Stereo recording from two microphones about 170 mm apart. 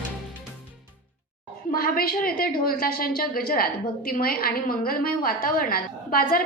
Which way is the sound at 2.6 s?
60° left (ahead or behind).